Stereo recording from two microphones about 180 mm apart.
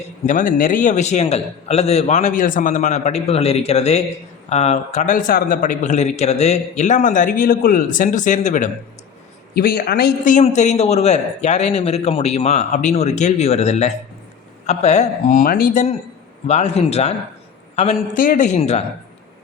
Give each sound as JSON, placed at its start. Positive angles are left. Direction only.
{"t": 0.3, "sound": "a man's voice", "side_deg": 45}
{"t": 9.6, "sound": "a woman's voice", "side_deg": 55}
{"t": 10.3, "sound": "a man's voice", "side_deg": 40}